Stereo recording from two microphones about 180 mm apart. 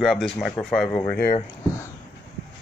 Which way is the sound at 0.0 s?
Centre (ahead or behind).